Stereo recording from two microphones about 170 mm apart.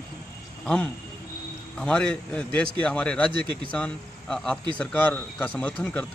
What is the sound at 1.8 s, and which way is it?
A man's voice, 5° left (ahead or behind).